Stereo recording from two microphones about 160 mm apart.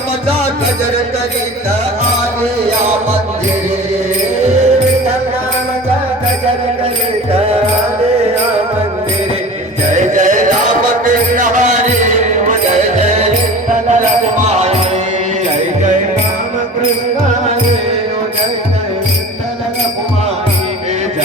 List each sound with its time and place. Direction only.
4.4 s music: 45° right (ahead or behind)
9.9 s music: 50° right (ahead or behind)